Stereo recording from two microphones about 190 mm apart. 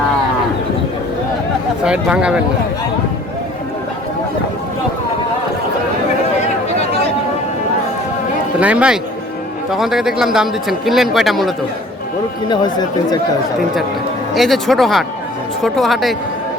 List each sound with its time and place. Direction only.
1.8 s a man's voice: 5° right (ahead or behind)
8.6 s a man's voice: 5° right (ahead or behind)
12.5 s speech: 20° left (ahead or behind)
14.3 s a man's voice: centre (ahead or behind)